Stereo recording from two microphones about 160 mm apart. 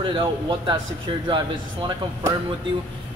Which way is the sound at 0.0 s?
30° right (ahead or behind).